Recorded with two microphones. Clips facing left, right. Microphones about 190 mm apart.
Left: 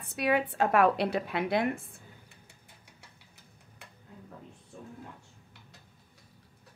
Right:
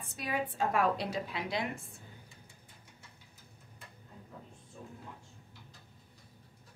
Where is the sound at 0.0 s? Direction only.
70° left (ahead or behind).